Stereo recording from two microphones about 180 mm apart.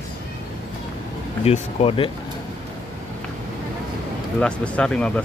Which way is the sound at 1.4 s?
35° left (ahead or behind).